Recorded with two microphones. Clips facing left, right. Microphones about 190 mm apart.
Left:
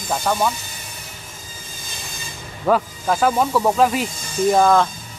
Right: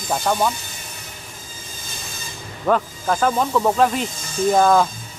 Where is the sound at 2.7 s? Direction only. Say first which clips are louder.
Left 1 dB; 5° left (ahead or behind).